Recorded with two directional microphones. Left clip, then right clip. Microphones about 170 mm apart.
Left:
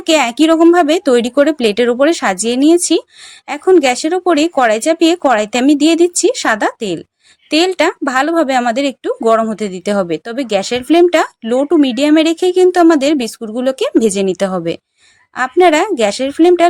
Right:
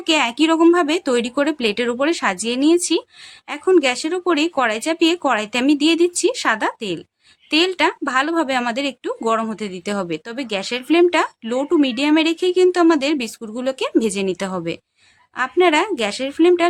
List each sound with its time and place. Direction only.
0.0 s speech: 25° left (ahead or behind)